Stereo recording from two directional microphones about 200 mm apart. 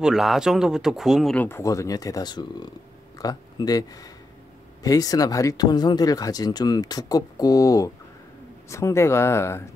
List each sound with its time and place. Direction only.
0.0 s speech: centre (ahead or behind)